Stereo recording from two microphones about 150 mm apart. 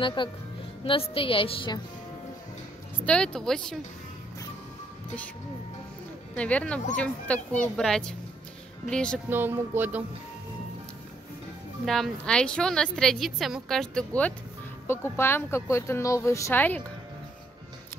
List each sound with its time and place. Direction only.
0.0 s a woman's voice: 30° left (ahead or behind)
3.1 s a woman's voice: 5° left (ahead or behind)
6.3 s a woman's voice: 10° left (ahead or behind)
9.3 s speech: 15° right (ahead or behind)
11.8 s a woman's voice: centre (ahead or behind)